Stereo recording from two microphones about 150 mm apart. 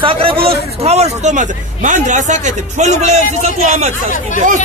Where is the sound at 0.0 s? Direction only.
35° right (ahead or behind).